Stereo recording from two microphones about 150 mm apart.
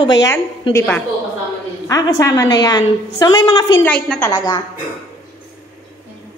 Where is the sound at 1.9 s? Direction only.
25° left (ahead or behind).